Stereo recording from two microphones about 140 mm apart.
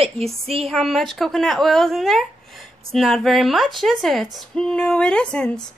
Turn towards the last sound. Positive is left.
turn(degrees=5)  # may be behind; listen again after turning